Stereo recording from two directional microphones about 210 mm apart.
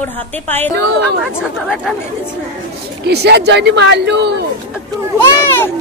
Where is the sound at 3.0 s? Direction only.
50° right (ahead or behind).